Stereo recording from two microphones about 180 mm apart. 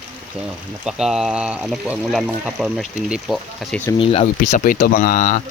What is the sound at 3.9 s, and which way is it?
Speech, 30° left (ahead or behind).